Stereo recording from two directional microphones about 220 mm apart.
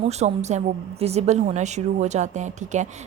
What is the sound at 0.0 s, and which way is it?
A woman's voice, 30° right (ahead or behind).